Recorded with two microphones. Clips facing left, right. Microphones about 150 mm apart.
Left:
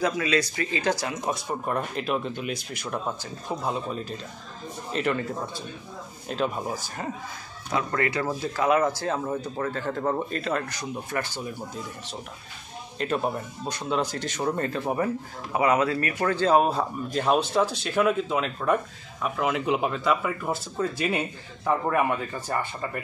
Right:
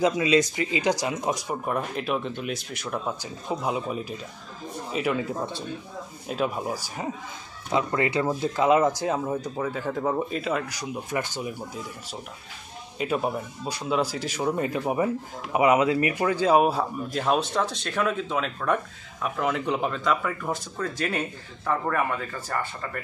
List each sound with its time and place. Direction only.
0.0 s speech: 20° right (ahead or behind)
1.7 s speech: centre (ahead or behind)
3.4 s speech: 15° right (ahead or behind)
6.2 s speech: 5° right (ahead or behind)
7.7 s speech: 20° right (ahead or behind); by 22.8 s 15° left (ahead or behind)